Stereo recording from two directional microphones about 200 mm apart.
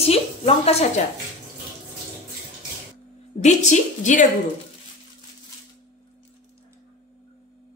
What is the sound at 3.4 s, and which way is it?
Speech, 35° left (ahead or behind).